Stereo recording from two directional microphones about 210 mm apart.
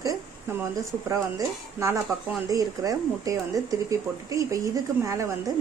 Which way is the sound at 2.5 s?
15° right (ahead or behind).